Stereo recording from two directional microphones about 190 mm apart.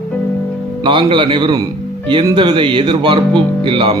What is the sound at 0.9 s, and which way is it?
Speech, 25° right (ahead or behind).